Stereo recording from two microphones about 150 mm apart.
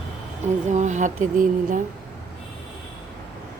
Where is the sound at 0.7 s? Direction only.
50° right (ahead or behind).